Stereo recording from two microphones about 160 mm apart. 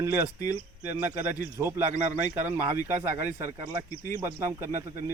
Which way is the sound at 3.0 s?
15° right (ahead or behind).